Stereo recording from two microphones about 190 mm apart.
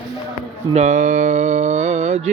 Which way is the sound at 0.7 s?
40° right (ahead or behind).